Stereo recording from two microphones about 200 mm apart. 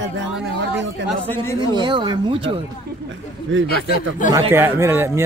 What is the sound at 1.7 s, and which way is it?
Speech, 20° right (ahead or behind).